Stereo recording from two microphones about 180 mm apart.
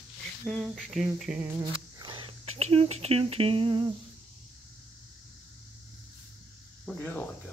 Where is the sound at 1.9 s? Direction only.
25° right (ahead or behind).